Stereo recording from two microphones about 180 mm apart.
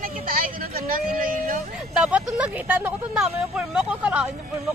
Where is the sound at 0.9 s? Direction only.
50° right (ahead or behind).